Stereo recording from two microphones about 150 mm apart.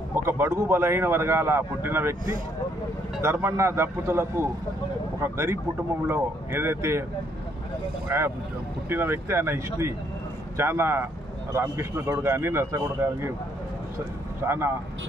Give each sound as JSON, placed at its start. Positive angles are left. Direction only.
{"t": 0.1, "sound": "speech", "side_deg": -15}
{"t": 3.2, "sound": "speech", "side_deg": -15}
{"t": 8.1, "sound": "speech", "side_deg": -15}
{"t": 14.4, "sound": "speech", "side_deg": -15}